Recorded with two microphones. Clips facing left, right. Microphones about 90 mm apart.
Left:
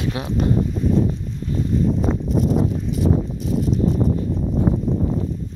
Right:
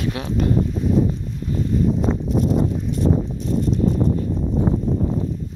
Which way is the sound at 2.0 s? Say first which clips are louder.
Even; centre (ahead or behind).